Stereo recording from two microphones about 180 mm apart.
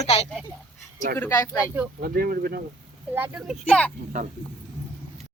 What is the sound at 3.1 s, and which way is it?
Speech, 10° right (ahead or behind).